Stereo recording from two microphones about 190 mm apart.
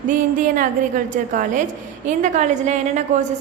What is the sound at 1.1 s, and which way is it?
A woman's voice, 45° right (ahead or behind).